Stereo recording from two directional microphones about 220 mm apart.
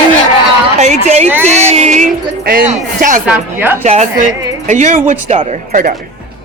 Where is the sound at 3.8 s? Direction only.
30° right (ahead or behind).